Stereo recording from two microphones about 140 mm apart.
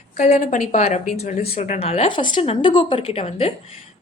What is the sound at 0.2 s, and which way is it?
A woman's voice, 55° left (ahead or behind).